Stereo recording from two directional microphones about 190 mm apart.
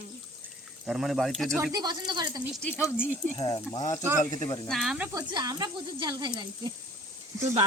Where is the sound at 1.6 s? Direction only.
20° right (ahead or behind).